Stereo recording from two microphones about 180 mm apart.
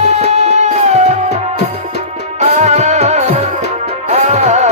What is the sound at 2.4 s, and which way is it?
Music, 40° right (ahead or behind).